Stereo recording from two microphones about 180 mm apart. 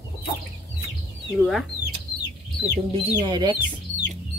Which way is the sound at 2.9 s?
25° right (ahead or behind).